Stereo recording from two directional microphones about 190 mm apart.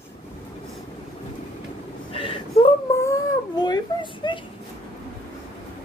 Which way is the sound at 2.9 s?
15° left (ahead or behind).